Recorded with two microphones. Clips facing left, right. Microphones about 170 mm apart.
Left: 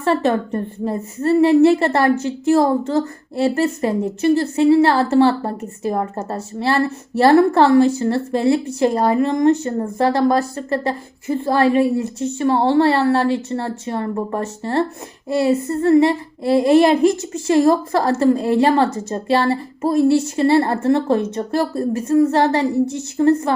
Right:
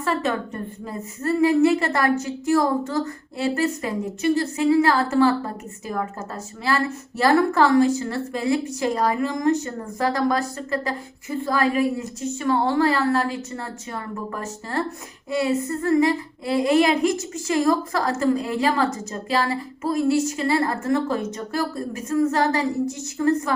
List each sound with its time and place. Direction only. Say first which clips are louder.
0.0 s a woman's voice: left 7 dB; 30° left (ahead or behind)